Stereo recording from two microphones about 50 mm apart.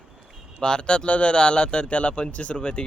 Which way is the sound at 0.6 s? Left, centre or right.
Centre.